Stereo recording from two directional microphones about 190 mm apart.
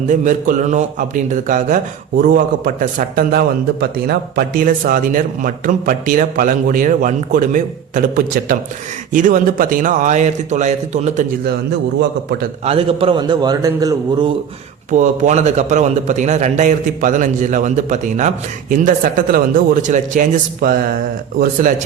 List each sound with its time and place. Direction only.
0.1 s speech: 40° right (ahead or behind)
11.9 s a man's voice: 60° right (ahead or behind)
12.6 s a man's voice: 30° right (ahead or behind)
14.8 s a man's voice: 40° right (ahead or behind)